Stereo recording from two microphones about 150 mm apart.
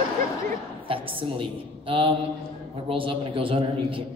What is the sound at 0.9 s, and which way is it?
A man's voice, 35° right (ahead or behind).